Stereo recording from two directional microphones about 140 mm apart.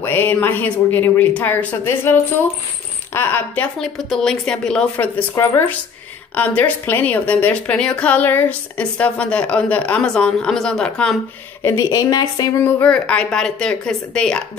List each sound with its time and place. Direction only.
0.0 s a woman's voice: 15° left (ahead or behind)
5.3 s a woman's voice: 20° left (ahead or behind)
11.6 s a woman's voice: 20° left (ahead or behind)
12.8 s a woman's voice: 5° left (ahead or behind)